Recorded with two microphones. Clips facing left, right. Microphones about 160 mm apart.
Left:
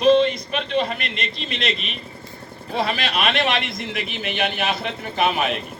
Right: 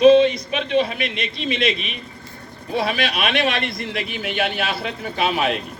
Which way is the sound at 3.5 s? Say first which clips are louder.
Even; 55° right (ahead or behind).